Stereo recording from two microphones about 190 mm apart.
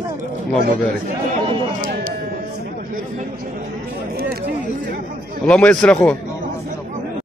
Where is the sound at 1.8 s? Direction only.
45° right (ahead or behind).